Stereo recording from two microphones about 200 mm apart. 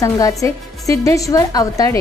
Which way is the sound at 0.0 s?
15° left (ahead or behind).